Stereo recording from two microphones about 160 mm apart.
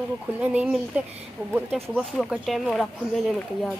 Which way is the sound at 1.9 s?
Centre (ahead or behind).